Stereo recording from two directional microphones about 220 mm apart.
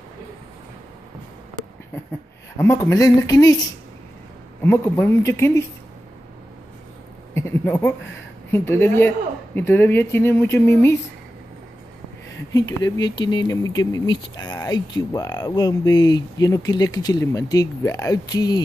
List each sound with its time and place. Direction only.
2.5 s speech: 15° left (ahead or behind)
4.6 s speech: 10° left (ahead or behind)
7.3 s speech: 10° left (ahead or behind)
12.5 s speech: 15° left (ahead or behind)